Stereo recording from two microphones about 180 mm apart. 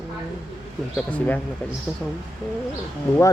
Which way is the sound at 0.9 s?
10° left (ahead or behind).